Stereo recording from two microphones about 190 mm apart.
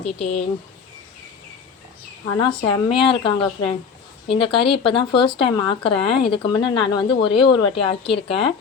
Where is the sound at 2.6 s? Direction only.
25° left (ahead or behind).